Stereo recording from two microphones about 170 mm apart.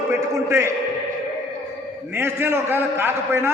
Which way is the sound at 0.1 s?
15° right (ahead or behind).